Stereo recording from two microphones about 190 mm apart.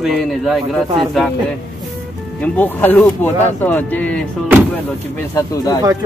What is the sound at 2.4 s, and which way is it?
Speech, 10° left (ahead or behind).